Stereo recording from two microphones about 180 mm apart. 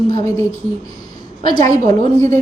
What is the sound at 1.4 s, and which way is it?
Speech, 20° left (ahead or behind).